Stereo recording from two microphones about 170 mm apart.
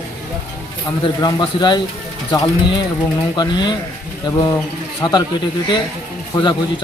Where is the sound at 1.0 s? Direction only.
25° left (ahead or behind).